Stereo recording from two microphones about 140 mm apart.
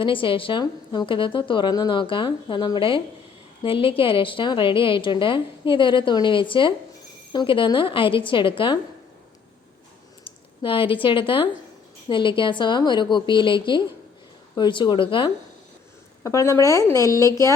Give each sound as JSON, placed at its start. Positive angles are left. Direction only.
{"t": 0.0, "sound": "a woman's voice", "side_deg": 40}
{"t": 10.2, "sound": "a woman's voice", "side_deg": 40}
{"t": 16.2, "sound": "speech", "side_deg": 20}